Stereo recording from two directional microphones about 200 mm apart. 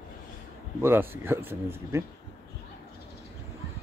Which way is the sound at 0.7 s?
10° right (ahead or behind).